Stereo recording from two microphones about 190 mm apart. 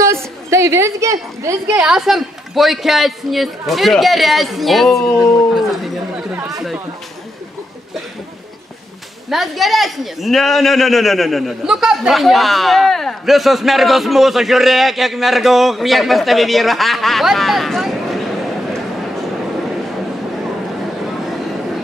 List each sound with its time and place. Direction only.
0.0 s speech: 15° right (ahead or behind)
9.3 s speech: centre (ahead or behind)